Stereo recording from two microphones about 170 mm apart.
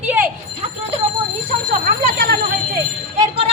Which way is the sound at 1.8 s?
60° right (ahead or behind).